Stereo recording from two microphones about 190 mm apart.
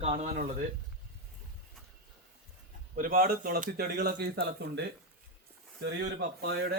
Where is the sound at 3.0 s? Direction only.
50° right (ahead or behind).